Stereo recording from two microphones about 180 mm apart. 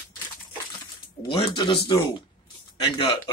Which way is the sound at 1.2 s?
25° left (ahead or behind).